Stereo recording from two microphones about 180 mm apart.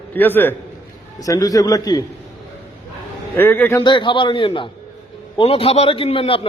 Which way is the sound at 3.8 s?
25° left (ahead or behind).